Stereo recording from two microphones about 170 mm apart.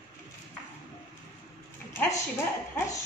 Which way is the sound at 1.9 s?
20° left (ahead or behind).